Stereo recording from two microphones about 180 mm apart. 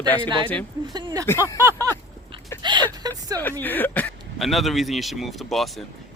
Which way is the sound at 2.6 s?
25° right (ahead or behind).